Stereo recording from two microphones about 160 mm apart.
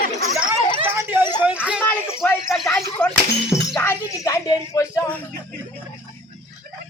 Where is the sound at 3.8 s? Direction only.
15° left (ahead or behind).